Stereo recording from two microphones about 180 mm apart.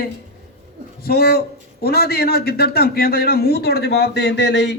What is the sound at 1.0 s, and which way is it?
A man's voice, 60° left (ahead or behind).